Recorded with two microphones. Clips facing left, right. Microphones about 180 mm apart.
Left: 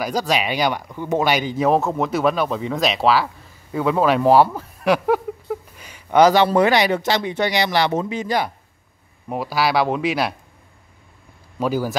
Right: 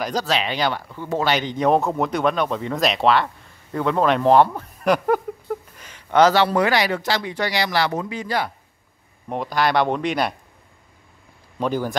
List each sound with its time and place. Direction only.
0.0 s speech: 10° left (ahead or behind)
9.3 s speech: 5° left (ahead or behind)
11.6 s speech: 5° left (ahead or behind)